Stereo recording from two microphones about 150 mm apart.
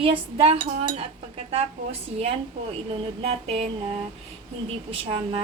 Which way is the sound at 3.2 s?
40° right (ahead or behind).